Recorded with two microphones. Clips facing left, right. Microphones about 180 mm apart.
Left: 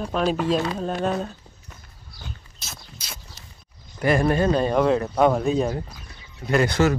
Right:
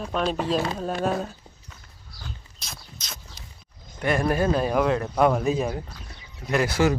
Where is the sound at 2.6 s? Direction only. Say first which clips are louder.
Left 1 dB; 5° left (ahead or behind).